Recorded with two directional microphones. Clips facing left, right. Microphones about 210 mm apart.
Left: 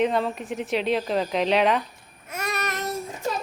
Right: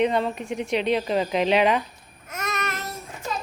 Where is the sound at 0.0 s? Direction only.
Centre (ahead or behind).